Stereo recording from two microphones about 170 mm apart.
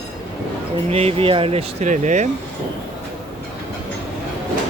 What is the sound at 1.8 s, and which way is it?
Speech, 45° right (ahead or behind).